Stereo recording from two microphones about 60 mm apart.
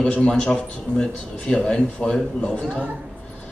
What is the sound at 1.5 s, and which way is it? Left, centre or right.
A man's voice, centre.